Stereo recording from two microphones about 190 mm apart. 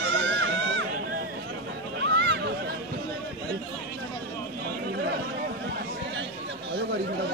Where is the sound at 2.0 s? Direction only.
75° right (ahead or behind).